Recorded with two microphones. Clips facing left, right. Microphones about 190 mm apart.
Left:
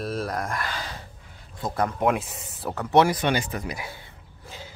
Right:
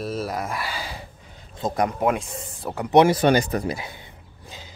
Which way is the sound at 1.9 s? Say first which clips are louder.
Right 1 dB; centre (ahead or behind).